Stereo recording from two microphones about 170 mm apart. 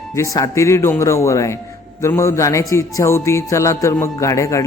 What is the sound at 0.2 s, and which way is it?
Speech, 20° left (ahead or behind).